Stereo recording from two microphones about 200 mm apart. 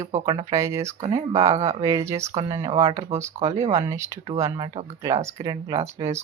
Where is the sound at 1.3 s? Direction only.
30° right (ahead or behind).